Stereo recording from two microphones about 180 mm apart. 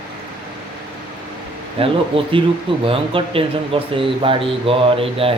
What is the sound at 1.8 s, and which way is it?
Speech, 30° right (ahead or behind).